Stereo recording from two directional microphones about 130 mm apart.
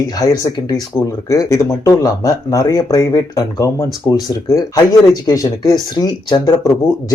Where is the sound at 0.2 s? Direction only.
30° left (ahead or behind).